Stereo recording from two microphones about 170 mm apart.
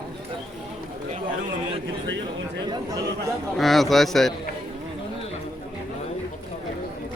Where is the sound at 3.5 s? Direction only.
Centre (ahead or behind).